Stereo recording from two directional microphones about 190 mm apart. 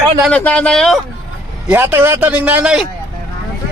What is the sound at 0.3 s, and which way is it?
Speech, 5° left (ahead or behind).